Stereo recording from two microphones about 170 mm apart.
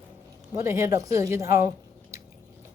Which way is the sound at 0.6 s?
15° right (ahead or behind).